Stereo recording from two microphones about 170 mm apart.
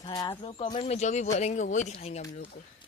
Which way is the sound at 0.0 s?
25° left (ahead or behind).